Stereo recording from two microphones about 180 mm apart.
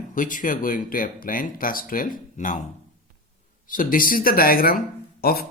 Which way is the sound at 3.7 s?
50° left (ahead or behind).